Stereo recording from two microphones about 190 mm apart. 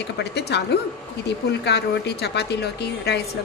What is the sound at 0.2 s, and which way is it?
Speech, 60° left (ahead or behind).